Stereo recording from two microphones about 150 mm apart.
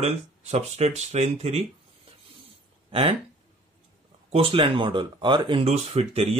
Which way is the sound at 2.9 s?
35° right (ahead or behind).